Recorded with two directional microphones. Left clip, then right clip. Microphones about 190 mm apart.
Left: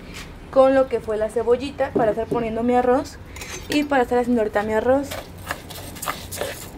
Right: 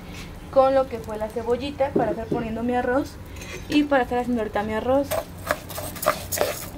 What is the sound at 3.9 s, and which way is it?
Speech, 15° left (ahead or behind).